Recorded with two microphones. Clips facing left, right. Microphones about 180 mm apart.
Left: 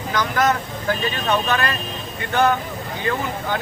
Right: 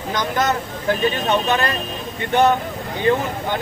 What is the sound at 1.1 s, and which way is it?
Speech, 20° right (ahead or behind).